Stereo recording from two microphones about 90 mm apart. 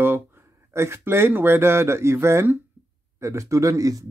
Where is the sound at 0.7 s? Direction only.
30° right (ahead or behind).